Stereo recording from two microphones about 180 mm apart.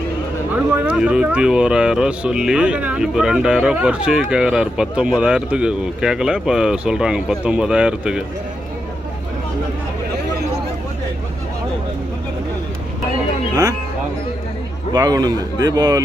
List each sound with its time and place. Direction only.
0.5 s speech: 10° right (ahead or behind)
14.9 s speech: 20° right (ahead or behind)